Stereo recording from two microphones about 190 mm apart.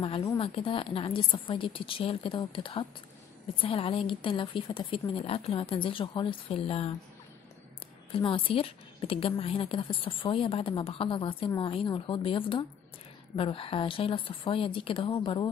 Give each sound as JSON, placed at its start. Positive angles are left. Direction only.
{"t": 0.0, "sound": "a woman's voice", "side_deg": 25}
{"t": 8.1, "sound": "a woman's voice", "side_deg": 25}